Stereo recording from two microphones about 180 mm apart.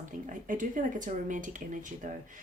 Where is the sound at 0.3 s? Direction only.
45° right (ahead or behind).